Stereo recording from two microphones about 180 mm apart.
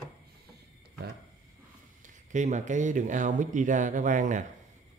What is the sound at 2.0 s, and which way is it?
Speech, 40° right (ahead or behind).